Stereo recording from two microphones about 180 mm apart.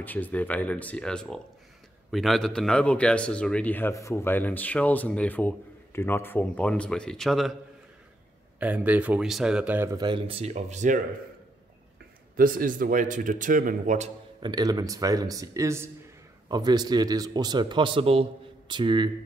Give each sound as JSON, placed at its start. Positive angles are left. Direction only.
{"t": 0.0, "sound": "a man's voice", "side_deg": 10}
{"t": 8.5, "sound": "speech", "side_deg": -10}
{"t": 9.9, "sound": "speech", "side_deg": -25}
{"t": 12.4, "sound": "speech", "side_deg": -50}
{"t": 14.4, "sound": "a man's voice", "side_deg": -20}